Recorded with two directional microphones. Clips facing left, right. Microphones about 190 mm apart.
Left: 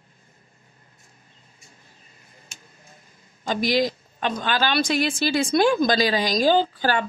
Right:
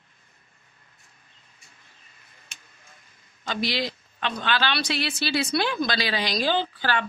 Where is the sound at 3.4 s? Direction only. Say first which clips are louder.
Left 6 dB; 45° left (ahead or behind).